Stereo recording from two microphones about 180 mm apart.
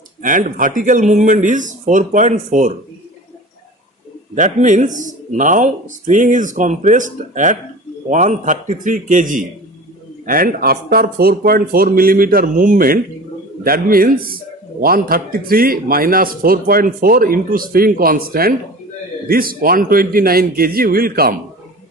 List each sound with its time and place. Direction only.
0.2 s speech: 45° right (ahead or behind)
4.4 s a man's voice: 45° right (ahead or behind)